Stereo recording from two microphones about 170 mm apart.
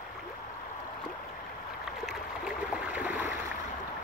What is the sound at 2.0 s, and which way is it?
Stream, 5° right (ahead or behind).